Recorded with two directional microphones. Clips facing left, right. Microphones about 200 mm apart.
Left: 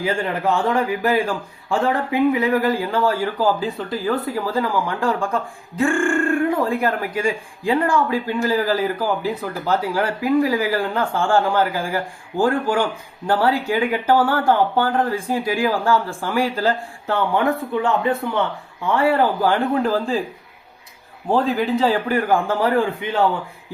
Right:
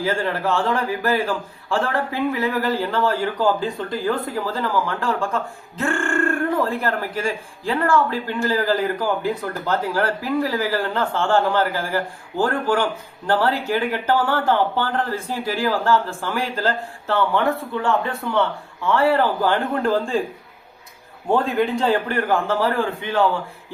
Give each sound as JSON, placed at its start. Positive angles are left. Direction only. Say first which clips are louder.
{"t": 0.0, "sound": "speech", "louder": "left 1 dB", "side_deg": 15}
{"t": 21.2, "sound": "a man's voice", "louder": "left 1 dB", "side_deg": 0}